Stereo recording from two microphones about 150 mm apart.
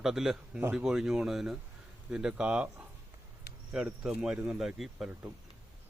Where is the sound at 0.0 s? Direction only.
5° right (ahead or behind).